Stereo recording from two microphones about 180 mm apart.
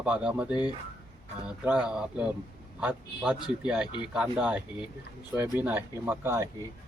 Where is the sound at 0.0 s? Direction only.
5° right (ahead or behind).